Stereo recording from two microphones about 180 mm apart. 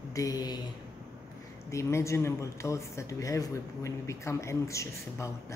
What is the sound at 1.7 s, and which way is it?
Speech, 15° left (ahead or behind).